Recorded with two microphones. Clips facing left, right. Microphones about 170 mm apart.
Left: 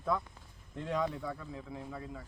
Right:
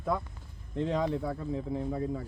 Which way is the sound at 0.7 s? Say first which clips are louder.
Right 5 dB; 25° right (ahead or behind).